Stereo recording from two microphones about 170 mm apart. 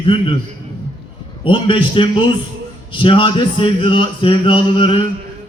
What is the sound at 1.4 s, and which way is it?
A man's voice, 30° left (ahead or behind).